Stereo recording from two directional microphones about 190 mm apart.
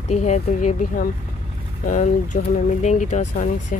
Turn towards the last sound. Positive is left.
turn(degrees=40)  # may be behind; listen again after turning